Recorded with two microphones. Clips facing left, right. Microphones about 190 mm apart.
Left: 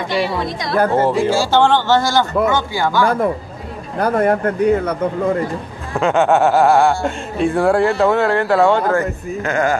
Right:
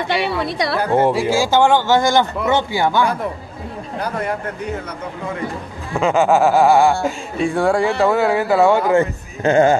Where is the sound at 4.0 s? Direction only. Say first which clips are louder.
Left 9 dB; 55° left (ahead or behind).